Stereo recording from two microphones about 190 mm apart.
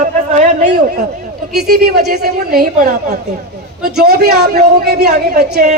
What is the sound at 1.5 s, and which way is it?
A man's voice, 55° right (ahead or behind).